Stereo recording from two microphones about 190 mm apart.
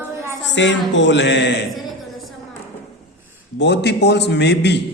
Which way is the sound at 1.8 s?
Centre (ahead or behind).